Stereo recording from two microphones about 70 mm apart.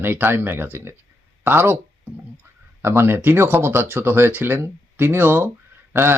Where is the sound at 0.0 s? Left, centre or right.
Right.